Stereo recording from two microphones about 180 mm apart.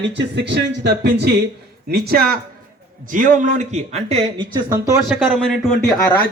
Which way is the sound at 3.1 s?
45° right (ahead or behind).